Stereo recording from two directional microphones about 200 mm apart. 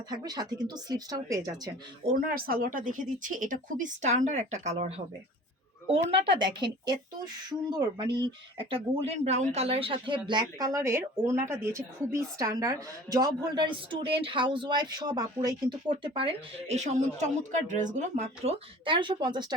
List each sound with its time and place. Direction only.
0.1 s speech: 20° right (ahead or behind)
2.0 s speech: 45° right (ahead or behind)
6.4 s speech: 20° right (ahead or behind)